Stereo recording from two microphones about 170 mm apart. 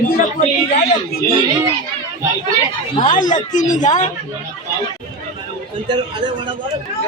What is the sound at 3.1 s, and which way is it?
Speech, 50° left (ahead or behind).